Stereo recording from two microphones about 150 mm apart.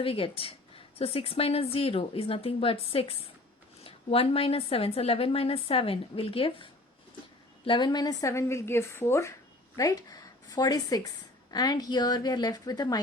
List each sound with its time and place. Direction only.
0.0 s a woman's voice: 40° left (ahead or behind)